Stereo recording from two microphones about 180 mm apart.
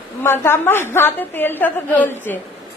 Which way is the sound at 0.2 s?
15° left (ahead or behind).